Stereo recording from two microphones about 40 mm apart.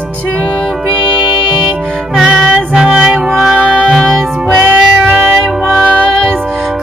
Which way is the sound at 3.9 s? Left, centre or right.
Centre.